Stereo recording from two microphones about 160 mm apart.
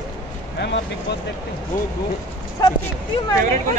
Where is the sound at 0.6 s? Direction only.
90° left.